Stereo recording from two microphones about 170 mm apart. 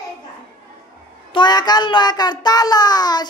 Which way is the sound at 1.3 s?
25° left (ahead or behind).